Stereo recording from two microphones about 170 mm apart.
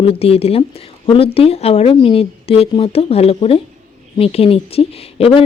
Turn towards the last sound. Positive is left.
turn(degrees=35)  # may be behind; listen again after turning